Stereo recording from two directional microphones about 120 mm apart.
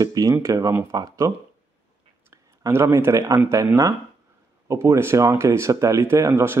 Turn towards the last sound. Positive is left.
turn(degrees=-20)  # may be behind; listen again after turning